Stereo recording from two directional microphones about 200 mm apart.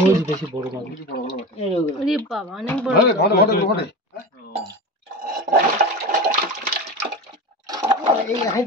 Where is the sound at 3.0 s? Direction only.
55° left (ahead or behind).